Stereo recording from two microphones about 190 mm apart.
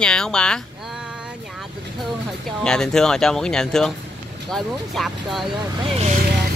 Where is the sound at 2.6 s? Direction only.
5° left (ahead or behind).